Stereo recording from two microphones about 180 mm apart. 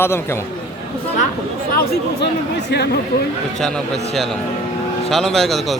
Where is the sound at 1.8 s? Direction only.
65° left (ahead or behind).